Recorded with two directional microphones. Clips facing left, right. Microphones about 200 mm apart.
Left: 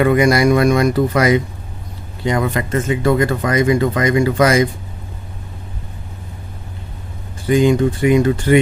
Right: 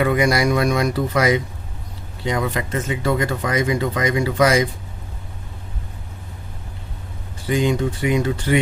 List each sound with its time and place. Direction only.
0.0 s speech: 55° left (ahead or behind)
7.4 s speech: 50° left (ahead or behind)